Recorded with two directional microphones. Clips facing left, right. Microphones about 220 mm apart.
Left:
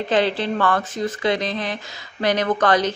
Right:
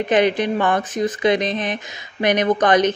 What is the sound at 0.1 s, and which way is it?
A woman's voice, 15° right (ahead or behind).